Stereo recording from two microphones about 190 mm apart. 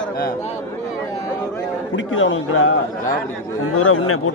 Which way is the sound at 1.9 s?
90° left.